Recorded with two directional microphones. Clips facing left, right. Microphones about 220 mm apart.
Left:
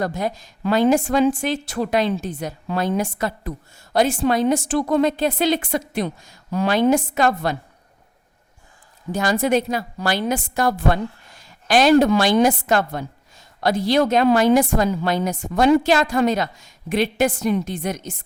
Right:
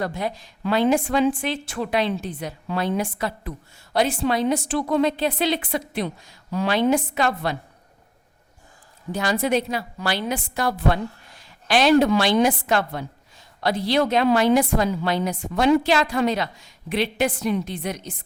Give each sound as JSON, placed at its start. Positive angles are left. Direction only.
{"t": 0.0, "sound": "a woman's voice", "side_deg": 45}
{"t": 9.1, "sound": "a woman's voice", "side_deg": 45}